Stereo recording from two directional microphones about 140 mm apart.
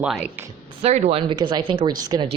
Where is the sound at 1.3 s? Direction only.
35° right (ahead or behind).